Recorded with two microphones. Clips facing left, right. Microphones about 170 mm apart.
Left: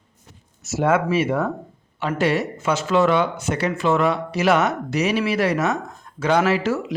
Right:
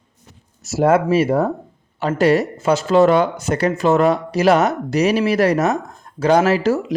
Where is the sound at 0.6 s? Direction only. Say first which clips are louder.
Right 4 dB; 35° right (ahead or behind).